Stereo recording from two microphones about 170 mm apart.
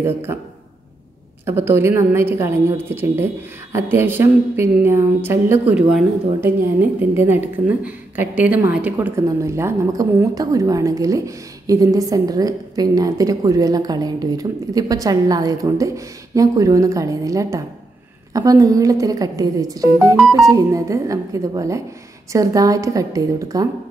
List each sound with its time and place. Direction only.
0.0 s a woman's voice: 15° right (ahead or behind)
1.4 s a woman's voice: 15° right (ahead or behind)